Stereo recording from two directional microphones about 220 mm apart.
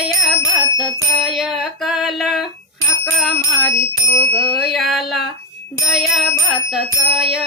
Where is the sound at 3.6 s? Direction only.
50° left (ahead or behind).